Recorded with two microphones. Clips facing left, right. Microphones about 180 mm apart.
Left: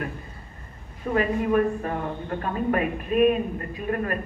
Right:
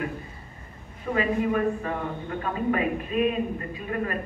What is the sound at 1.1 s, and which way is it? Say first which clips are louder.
A man's voice: left 2 dB; 45° left (ahead or behind).